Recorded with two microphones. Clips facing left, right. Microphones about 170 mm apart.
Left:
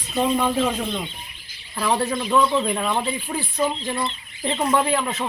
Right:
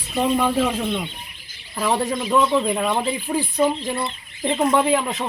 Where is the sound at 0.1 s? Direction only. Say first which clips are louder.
Right 1 dB; 5° right (ahead or behind).